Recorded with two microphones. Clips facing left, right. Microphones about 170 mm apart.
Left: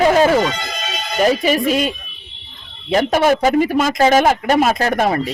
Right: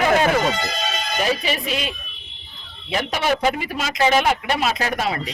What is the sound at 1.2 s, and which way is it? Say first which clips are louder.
Speech: left 9 dB; 45° left (ahead or behind).